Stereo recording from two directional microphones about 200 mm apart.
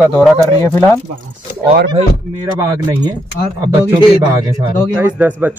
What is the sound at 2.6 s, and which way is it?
Speech, 20° right (ahead or behind).